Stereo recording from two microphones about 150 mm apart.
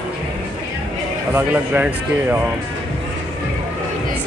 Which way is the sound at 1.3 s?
10° right (ahead or behind).